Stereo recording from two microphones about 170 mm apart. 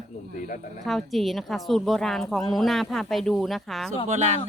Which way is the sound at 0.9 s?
Centre (ahead or behind).